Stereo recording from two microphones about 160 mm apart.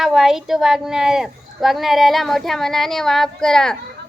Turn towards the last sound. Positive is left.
turn(degrees=5)  # may be behind; listen again after turning